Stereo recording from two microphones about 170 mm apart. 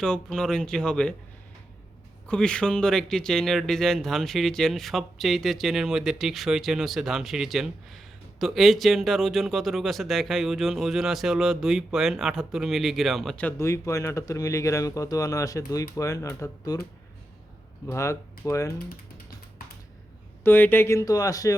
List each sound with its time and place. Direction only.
0.0 s a man's voice: 5° left (ahead or behind)
2.2 s a man's voice: 5° left (ahead or behind)
17.8 s speech: 15° left (ahead or behind)
20.4 s speech: 10° left (ahead or behind)